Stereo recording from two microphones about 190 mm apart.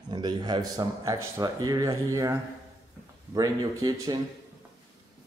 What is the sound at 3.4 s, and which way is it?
Speech, 20° right (ahead or behind).